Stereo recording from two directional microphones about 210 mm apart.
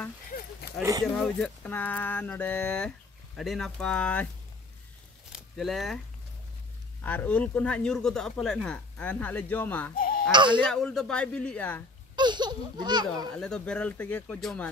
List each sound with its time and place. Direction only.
0.3 s a sound: 45° left (ahead or behind)
1.0 s speech: 5° left (ahead or behind)
5.3 s a sound: centre (ahead or behind)
7.0 s speech: 10° left (ahead or behind)
9.9 s bleat: 40° left (ahead or behind)
10.3 s speech: 20° right (ahead or behind)
10.7 s speech: 5° left (ahead or behind)
12.2 s speech: 20° right (ahead or behind)
13.4 s speech: 5° left (ahead or behind)